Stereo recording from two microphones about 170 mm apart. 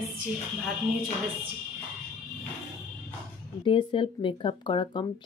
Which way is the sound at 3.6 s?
30° left (ahead or behind).